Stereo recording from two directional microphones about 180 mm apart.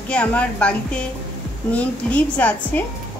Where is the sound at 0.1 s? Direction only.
5° left (ahead or behind).